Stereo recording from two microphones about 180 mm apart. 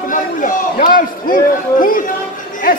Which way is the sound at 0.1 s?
45° left (ahead or behind).